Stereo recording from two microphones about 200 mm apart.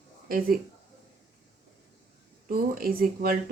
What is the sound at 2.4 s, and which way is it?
Speech, 45° right (ahead or behind).